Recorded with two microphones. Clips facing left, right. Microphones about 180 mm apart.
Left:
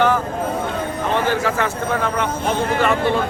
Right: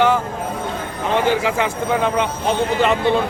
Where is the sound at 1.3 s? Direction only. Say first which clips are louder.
Right 1 dB; 15° right (ahead or behind).